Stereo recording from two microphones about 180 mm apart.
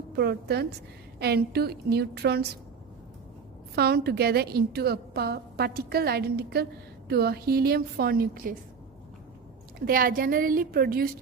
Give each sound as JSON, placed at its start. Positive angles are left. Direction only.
{"t": 0.2, "sound": "a woman's voice", "side_deg": -65}
{"t": 3.8, "sound": "a woman's voice", "side_deg": -60}
{"t": 9.8, "sound": "a woman's voice", "side_deg": -55}